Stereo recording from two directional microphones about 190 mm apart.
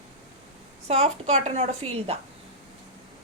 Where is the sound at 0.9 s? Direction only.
35° right (ahead or behind).